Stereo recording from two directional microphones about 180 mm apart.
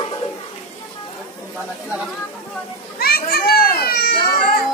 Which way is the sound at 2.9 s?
60° left (ahead or behind).